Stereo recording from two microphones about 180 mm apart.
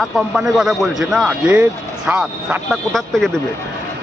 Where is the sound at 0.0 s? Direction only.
Centre (ahead or behind).